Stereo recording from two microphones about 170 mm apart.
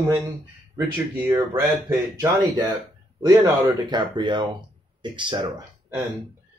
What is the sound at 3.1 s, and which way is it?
Speech, 25° right (ahead or behind).